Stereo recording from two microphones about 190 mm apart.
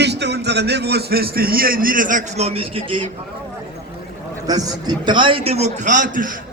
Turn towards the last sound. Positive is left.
turn(degrees=-45)  # may be behind; listen again after turning